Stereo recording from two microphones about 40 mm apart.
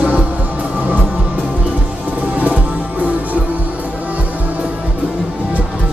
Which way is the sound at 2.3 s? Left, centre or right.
Right.